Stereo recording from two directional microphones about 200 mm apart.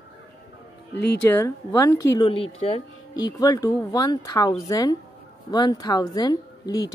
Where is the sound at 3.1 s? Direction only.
20° left (ahead or behind).